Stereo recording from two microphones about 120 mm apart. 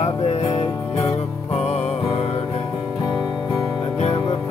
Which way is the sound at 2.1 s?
55° left (ahead or behind).